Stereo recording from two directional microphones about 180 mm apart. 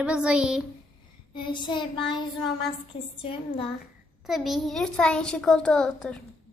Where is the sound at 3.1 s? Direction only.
30° left (ahead or behind).